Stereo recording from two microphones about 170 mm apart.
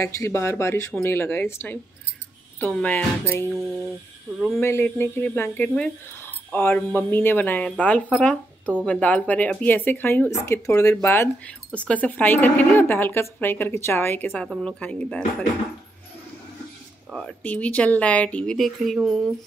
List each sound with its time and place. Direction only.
0.0 s speech: 15° left (ahead or behind)
4.6 s speech: 15° left (ahead or behind)
17.4 s speech: 10° left (ahead or behind)